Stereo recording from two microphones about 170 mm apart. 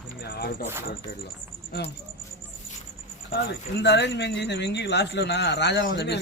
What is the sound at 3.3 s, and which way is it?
Speech, 80° left.